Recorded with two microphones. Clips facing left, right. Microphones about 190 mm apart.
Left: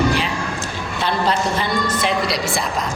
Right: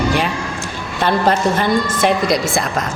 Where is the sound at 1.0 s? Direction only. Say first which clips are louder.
Right 5 dB; 50° right (ahead or behind).